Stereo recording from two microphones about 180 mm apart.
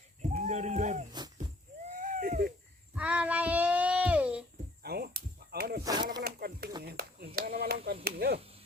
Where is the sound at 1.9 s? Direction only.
50° right (ahead or behind).